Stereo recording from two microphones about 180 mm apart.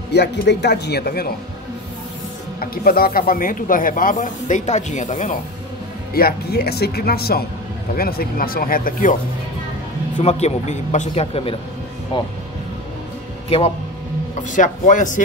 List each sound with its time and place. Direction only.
0.1 s speech: 70° left (ahead or behind)
2.6 s speech: 55° left (ahead or behind)
6.1 s speech: 60° left (ahead or behind)
10.2 s a man's voice: 35° left (ahead or behind)
14.5 s speech: 45° left (ahead or behind)